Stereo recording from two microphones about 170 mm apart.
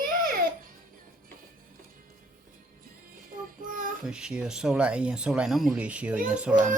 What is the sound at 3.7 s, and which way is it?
Child singing, 55° right (ahead or behind).